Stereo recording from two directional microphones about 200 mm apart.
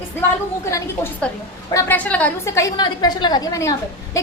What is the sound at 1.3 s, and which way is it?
A woman's voice, 5° left (ahead or behind).